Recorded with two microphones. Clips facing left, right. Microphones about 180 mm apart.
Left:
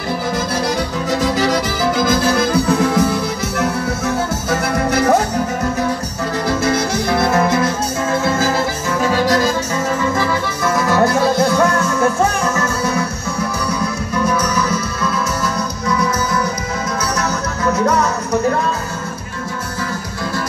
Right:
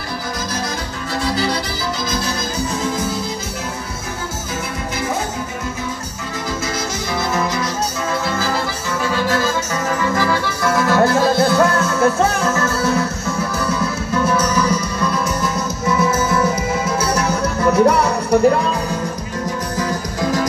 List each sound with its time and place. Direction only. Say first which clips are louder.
2.0 s music: left 8 dB; 60° left (ahead or behind)
7.2 s music: left 5 dB; 55° left (ahead or behind)
9.0 s music: left 4 dB; 40° left (ahead or behind)
10.7 s music: even; 20° left (ahead or behind)
14.3 s music: right 1 dB; 10° right (ahead or behind)